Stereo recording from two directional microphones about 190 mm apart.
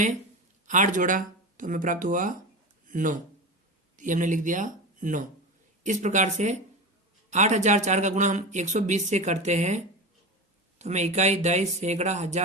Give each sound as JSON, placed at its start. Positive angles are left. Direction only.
{"t": 0.7, "sound": "a man's voice", "side_deg": -40}